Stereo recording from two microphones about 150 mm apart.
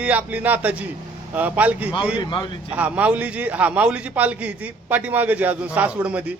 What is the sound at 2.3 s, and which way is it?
Speech, 30° left (ahead or behind).